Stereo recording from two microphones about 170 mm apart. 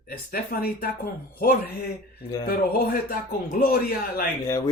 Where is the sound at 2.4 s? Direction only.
60° left (ahead or behind).